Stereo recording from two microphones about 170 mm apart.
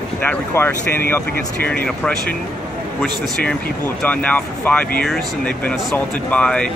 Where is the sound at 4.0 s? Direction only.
10° left (ahead or behind).